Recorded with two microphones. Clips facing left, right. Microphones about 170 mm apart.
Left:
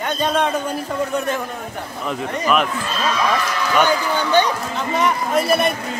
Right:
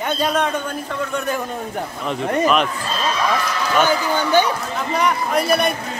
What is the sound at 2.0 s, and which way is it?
Speech, 5° left (ahead or behind).